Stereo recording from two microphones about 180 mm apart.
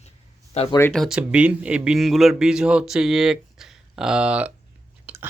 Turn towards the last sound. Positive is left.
turn(degrees=-10)  # may be behind; listen again after turning